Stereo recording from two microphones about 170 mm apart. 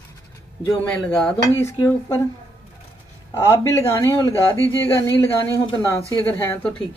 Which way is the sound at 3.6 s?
20° left (ahead or behind).